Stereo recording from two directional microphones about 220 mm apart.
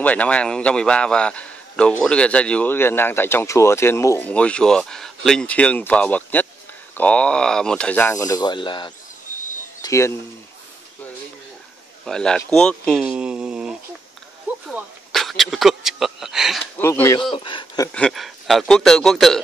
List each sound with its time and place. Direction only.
0.0 s a man's voice: 5° left (ahead or behind)
12.0 s a man's voice: 5° left (ahead or behind)
13.0 s a sound: 5° right (ahead or behind)
14.7 s speech: centre (ahead or behind)
16.8 s speech: 10° left (ahead or behind)
17.3 s speech: 20° left (ahead or behind)
17.9 s a man's voice: centre (ahead or behind)